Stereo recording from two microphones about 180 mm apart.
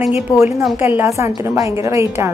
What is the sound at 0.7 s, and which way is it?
A woman's voice, 10° right (ahead or behind).